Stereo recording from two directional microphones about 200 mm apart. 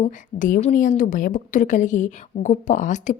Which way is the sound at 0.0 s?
40° left (ahead or behind).